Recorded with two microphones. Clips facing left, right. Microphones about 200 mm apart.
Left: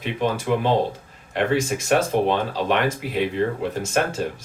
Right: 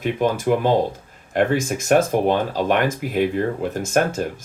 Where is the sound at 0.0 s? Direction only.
45° right (ahead or behind).